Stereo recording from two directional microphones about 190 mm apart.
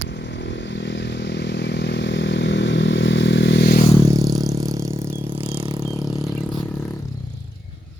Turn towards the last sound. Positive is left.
turn(degrees=10)  # may be behind; listen again after turning